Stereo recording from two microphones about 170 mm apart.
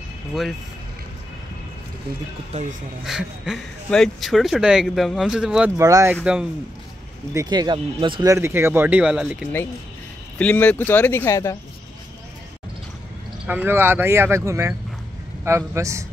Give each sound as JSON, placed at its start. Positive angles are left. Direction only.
{"t": 0.3, "sound": "speech", "side_deg": 0}
{"t": 3.1, "sound": "speech", "side_deg": -5}
{"t": 5.8, "sound": "speech", "side_deg": -20}
{"t": 7.3, "sound": "speech", "side_deg": -25}
{"t": 10.4, "sound": "speech", "side_deg": 10}
{"t": 13.5, "sound": "speech", "side_deg": -10}